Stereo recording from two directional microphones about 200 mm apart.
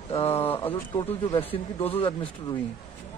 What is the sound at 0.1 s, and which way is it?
A man's voice, 30° left (ahead or behind).